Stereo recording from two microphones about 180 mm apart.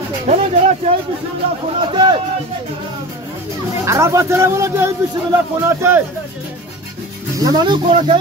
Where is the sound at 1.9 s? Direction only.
25° right (ahead or behind).